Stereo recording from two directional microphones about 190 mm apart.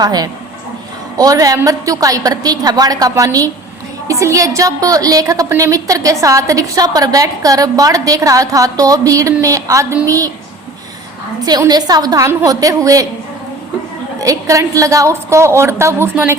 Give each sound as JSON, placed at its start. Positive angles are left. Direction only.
{"t": 0.0, "sound": "a woman's voice", "side_deg": -20}
{"t": 11.4, "sound": "a woman's voice", "side_deg": -20}
{"t": 14.2, "sound": "a woman's voice", "side_deg": -15}